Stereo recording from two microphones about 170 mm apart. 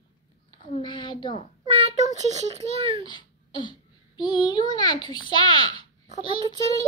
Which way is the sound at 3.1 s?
25° left (ahead or behind).